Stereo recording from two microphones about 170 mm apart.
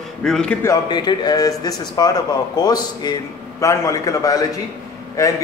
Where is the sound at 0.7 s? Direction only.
25° left (ahead or behind).